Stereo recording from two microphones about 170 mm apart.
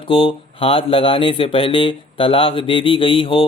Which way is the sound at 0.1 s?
30° left (ahead or behind).